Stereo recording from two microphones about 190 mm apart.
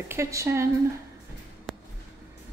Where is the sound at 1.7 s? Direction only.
Centre (ahead or behind).